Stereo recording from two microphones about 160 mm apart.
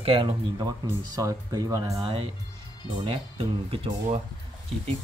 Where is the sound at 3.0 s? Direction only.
35° right (ahead or behind).